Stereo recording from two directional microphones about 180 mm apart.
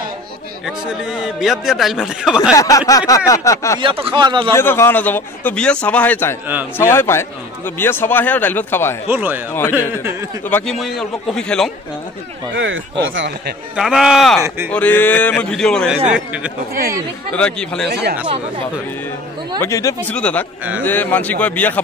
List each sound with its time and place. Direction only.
1.1 s speech: 5° right (ahead or behind)
2.5 s a sound: 20° left (ahead or behind)
2.9 s a man's voice: 20° left (ahead or behind)
3.8 s speech: 30° right (ahead or behind)
4.6 s a man's voice: 15° left (ahead or behind)
9.1 s speech: 10° right (ahead or behind)
9.5 s a man's voice: 10° left (ahead or behind)
12.5 s speech: 90° right
13.7 s a man's voice: 5° right (ahead or behind)
17.3 s speech: 5° left (ahead or behind)
19.6 s a man's voice: 15° left (ahead or behind)